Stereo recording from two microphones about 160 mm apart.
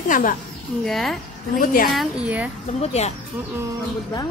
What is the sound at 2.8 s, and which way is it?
Speech, 40° left (ahead or behind).